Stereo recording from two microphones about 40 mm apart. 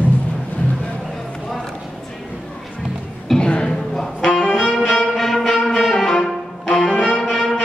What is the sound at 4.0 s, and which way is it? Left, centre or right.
Music, centre.